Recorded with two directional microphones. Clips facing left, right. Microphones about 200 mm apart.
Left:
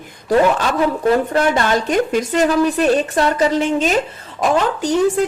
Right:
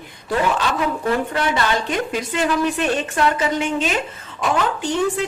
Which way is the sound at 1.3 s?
45° left (ahead or behind).